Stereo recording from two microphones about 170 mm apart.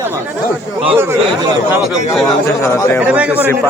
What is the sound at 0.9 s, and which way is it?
Speech, 15° right (ahead or behind).